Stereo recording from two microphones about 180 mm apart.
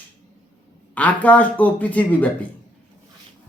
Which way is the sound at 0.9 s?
10° left (ahead or behind).